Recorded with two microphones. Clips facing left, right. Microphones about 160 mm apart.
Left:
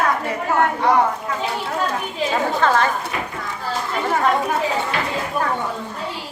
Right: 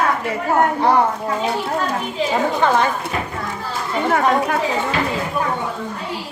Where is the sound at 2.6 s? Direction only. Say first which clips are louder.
Right 1 dB; 15° right (ahead or behind).